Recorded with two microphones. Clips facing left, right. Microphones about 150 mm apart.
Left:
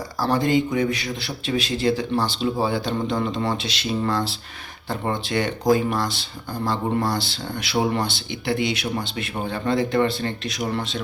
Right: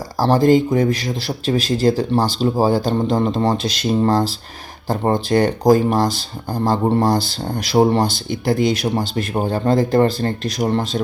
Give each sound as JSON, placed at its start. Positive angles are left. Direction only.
{"t": 0.2, "sound": "speech", "side_deg": -40}